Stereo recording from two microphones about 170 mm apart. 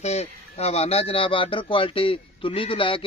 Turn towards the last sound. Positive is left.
turn(degrees=30)  # may be behind; listen again after turning